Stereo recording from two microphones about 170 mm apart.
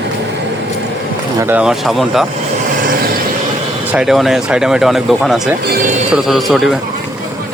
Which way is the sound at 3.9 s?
Centre (ahead or behind).